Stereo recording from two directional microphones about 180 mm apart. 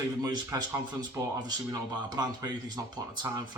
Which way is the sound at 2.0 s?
25° right (ahead or behind).